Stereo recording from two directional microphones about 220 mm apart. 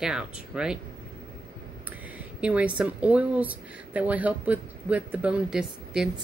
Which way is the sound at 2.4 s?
5° right (ahead or behind).